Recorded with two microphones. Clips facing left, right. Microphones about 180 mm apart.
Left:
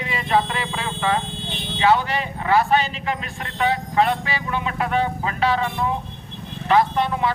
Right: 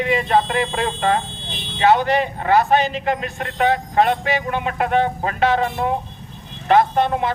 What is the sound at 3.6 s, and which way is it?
Speech, 50° right (ahead or behind).